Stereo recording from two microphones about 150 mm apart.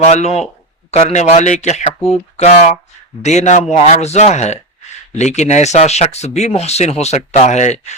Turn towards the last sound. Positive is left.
turn(degrees=50)  # may be behind; listen again after turning